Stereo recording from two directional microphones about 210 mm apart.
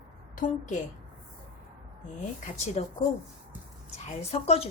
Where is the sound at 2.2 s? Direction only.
35° left (ahead or behind).